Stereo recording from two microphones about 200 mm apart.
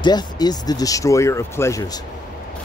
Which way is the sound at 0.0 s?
20° left (ahead or behind).